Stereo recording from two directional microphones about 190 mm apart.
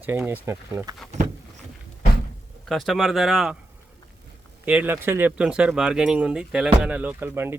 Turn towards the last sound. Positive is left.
turn(degrees=-10)  # may be behind; listen again after turning